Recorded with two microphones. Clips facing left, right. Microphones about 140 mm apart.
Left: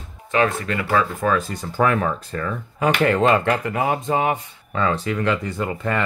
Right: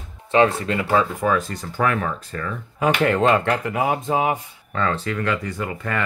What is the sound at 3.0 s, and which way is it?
Speech, centre (ahead or behind).